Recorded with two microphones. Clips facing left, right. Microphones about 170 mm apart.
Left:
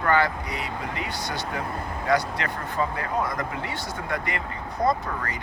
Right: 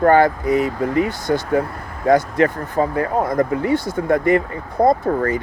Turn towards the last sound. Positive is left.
turn(degrees=-45)  # may be behind; listen again after turning